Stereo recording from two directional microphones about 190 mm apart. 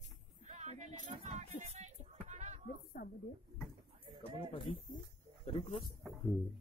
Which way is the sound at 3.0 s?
55° left (ahead or behind).